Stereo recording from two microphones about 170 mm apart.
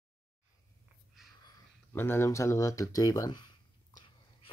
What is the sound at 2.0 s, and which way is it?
Speech, 15° left (ahead or behind).